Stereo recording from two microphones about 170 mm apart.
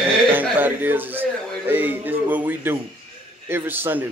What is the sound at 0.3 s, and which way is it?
Chuckle, 10° right (ahead or behind).